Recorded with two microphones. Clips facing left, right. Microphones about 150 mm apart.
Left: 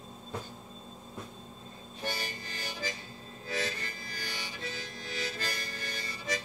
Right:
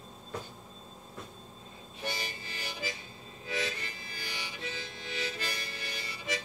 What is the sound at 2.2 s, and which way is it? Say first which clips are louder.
Harmonica: left 1 dB; 40° left (ahead or behind).